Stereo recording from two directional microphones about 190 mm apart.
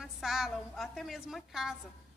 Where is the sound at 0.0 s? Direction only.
Centre (ahead or behind).